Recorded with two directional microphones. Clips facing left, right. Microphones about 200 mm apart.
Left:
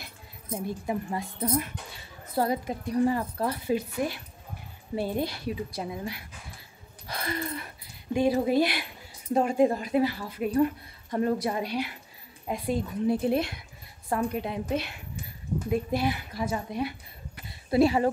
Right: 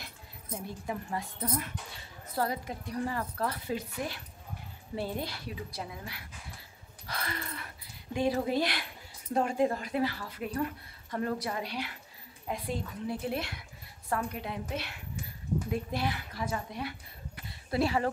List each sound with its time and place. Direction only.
0.0 s a woman's voice: 15° left (ahead or behind)